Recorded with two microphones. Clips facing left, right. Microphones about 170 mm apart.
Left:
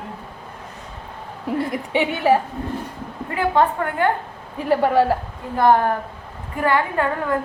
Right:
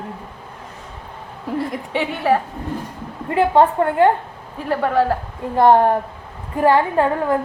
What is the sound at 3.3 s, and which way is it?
Speech, 30° right (ahead or behind).